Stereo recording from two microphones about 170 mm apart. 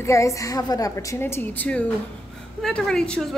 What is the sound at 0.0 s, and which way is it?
A woman's voice, 15° left (ahead or behind).